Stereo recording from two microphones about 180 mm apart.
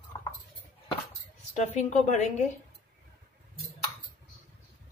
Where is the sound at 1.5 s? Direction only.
40° left (ahead or behind).